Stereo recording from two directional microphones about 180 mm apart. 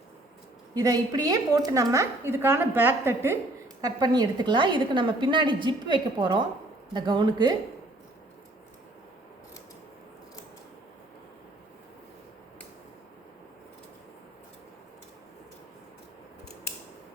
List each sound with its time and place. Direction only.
0.7 s a woman's voice: 20° right (ahead or behind)